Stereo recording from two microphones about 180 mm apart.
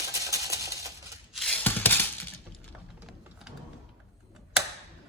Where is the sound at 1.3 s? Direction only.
5° left (ahead or behind).